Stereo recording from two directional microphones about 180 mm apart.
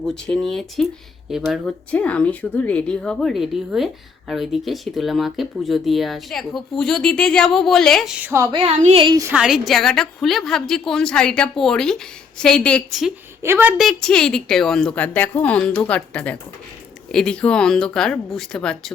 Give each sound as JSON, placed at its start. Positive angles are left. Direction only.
{"t": 0.0, "sound": "speech", "side_deg": 5}
{"t": 8.5, "sound": "a woman's voice", "side_deg": -35}
{"t": 9.3, "sound": "speech", "side_deg": -5}
{"t": 13.4, "sound": "speech", "side_deg": -10}